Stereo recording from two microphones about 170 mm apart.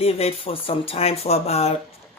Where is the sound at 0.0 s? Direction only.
35° left (ahead or behind).